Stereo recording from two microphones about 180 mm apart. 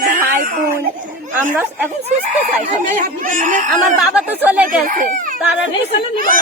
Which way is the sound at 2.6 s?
45° right (ahead or behind).